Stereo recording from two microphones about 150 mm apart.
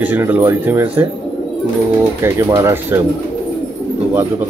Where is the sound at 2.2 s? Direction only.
20° right (ahead or behind).